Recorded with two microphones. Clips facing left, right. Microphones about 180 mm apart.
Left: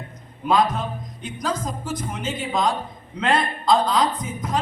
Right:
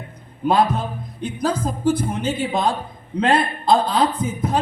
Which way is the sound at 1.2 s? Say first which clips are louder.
Right 5 dB; 30° right (ahead or behind).